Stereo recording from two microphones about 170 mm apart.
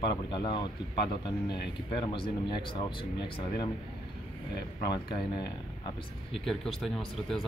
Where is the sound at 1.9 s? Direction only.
30° left (ahead or behind).